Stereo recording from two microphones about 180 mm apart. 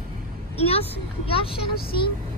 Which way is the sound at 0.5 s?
35° left (ahead or behind).